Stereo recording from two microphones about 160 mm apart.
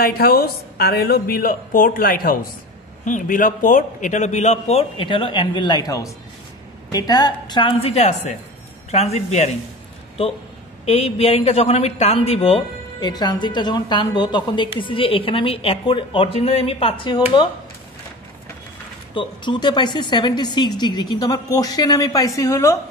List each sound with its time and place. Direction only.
0.0 s a woman's voice: 70° left (ahead or behind); by 9.6 s 45° left (ahead or behind)
10.9 s a man's voice: 40° left (ahead or behind)
19.1 s a woman's voice: 30° left (ahead or behind)